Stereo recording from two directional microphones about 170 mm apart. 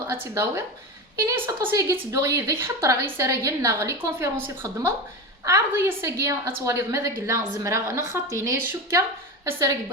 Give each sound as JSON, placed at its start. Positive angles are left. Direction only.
{"t": 0.1, "sound": "a woman's voice", "side_deg": -15}